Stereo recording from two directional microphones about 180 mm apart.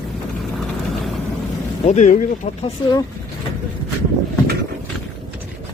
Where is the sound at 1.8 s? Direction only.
40° left (ahead or behind).